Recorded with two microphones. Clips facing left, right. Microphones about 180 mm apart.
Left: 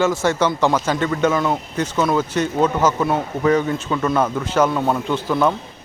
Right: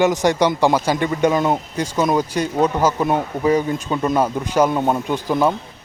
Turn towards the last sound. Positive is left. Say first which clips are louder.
# even
turn(degrees=-15)  # may be behind; listen again after turning